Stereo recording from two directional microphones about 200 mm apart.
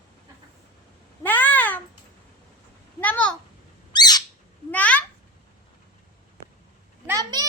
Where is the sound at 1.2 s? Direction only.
10° left (ahead or behind).